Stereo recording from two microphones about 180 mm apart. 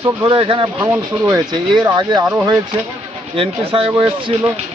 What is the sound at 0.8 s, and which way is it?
Speech, 15° right (ahead or behind).